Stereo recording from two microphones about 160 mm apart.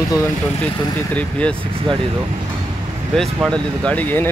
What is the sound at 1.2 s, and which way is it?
Speech, 5° left (ahead or behind).